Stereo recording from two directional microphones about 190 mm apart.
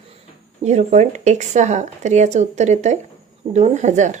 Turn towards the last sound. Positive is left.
turn(degrees=-40)  # may be behind; listen again after turning